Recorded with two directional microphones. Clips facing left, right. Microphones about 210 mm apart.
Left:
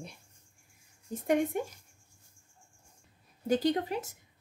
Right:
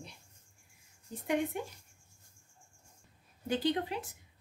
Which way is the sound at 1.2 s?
45° left (ahead or behind).